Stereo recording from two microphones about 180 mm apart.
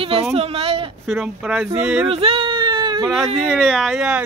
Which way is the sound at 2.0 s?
30° right (ahead or behind).